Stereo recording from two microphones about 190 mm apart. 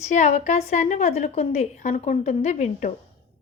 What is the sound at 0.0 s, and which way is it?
A woman's voice, 35° left (ahead or behind).